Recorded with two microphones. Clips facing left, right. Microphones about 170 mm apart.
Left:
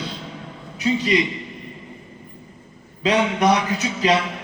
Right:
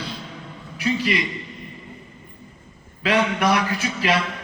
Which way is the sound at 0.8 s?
20° left (ahead or behind).